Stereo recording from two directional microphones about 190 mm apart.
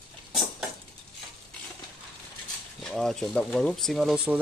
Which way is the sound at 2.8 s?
5° left (ahead or behind).